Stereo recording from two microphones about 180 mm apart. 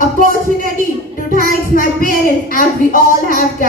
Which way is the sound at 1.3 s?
50° left (ahead or behind).